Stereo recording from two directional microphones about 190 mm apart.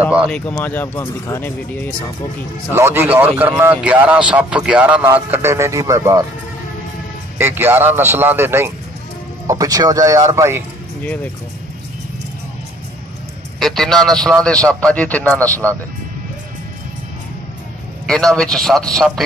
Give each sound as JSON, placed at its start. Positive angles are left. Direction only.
{"t": 0.3, "sound": "speech", "side_deg": 10}
{"t": 2.7, "sound": "a man's voice", "side_deg": -15}
{"t": 7.3, "sound": "a man's voice", "side_deg": -10}
{"t": 13.6, "sound": "a man's voice", "side_deg": 0}
{"t": 18.0, "sound": "a man's voice", "side_deg": 5}